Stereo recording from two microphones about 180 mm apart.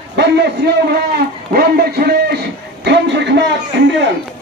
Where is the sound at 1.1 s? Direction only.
55° right (ahead or behind); by 3.9 s 80° right.